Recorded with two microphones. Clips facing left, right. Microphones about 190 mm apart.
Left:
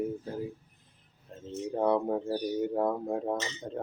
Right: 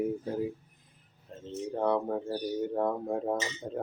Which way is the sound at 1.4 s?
5° left (ahead or behind).